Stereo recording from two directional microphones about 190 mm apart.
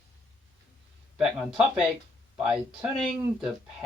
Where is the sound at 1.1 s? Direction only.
Centre (ahead or behind).